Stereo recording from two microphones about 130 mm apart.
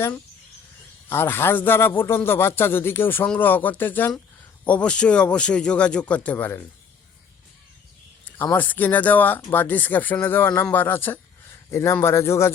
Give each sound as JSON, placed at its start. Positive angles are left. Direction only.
{"t": 1.1, "sound": "a man's voice", "side_deg": 20}
{"t": 8.5, "sound": "a man's voice", "side_deg": 15}